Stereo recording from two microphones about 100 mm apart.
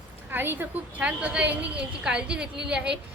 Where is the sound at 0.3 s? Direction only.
20° right (ahead or behind).